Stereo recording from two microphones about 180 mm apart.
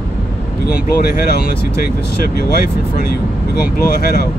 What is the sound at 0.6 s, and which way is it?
Speech, 60° left (ahead or behind).